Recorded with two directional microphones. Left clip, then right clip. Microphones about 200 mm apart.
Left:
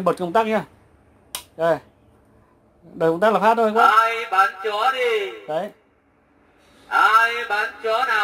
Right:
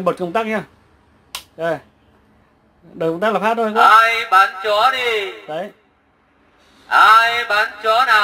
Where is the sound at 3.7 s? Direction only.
25° right (ahead or behind).